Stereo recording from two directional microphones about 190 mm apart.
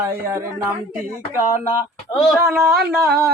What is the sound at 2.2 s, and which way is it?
Speech, centre (ahead or behind).